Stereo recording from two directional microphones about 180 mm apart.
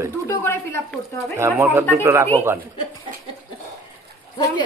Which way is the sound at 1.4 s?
10° right (ahead or behind).